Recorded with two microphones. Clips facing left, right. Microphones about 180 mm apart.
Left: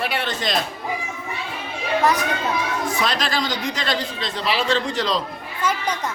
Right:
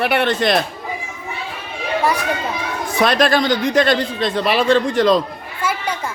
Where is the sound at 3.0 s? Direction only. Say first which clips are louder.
Right 12 dB; 55° right (ahead or behind).